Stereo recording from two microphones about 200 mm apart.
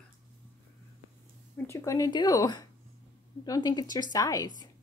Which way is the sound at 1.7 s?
15° left (ahead or behind).